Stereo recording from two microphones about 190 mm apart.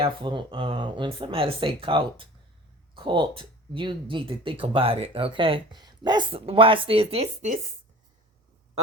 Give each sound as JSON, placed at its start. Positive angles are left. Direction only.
{"t": 0.0, "sound": "speech", "side_deg": -25}